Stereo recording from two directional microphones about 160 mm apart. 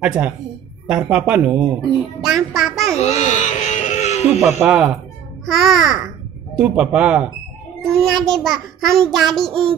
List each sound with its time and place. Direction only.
0.0 s a man's voice: 10° right (ahead or behind)
3.0 s baby cry: 40° left (ahead or behind)
4.5 s a man's voice: 15° right (ahead or behind)
5.4 s a woman's voice: centre (ahead or behind)